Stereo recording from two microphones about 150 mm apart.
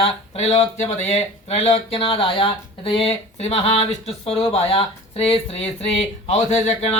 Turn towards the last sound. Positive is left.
turn(degrees=50)  # may be behind; listen again after turning